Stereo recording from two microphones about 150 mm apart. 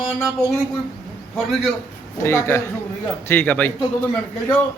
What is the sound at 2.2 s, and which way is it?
A man's voice, 15° left (ahead or behind).